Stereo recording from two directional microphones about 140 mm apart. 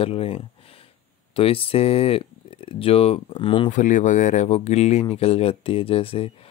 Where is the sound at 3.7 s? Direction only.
65° left (ahead or behind); by 6.3 s 45° left (ahead or behind).